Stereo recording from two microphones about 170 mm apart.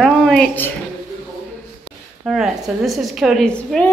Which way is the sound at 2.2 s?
5° right (ahead or behind).